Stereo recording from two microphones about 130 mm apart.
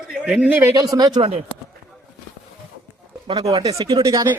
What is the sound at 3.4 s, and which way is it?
Speech, 25° right (ahead or behind).